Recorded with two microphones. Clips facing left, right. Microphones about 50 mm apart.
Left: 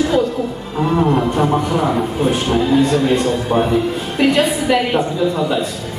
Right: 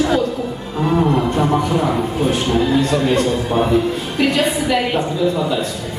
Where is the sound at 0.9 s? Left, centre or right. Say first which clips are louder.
Left 1 dB; centre.